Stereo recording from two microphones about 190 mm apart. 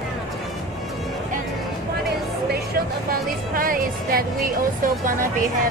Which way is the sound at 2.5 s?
55° right (ahead or behind).